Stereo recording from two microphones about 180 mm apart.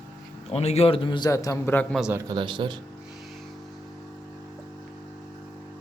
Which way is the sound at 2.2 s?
25° right (ahead or behind).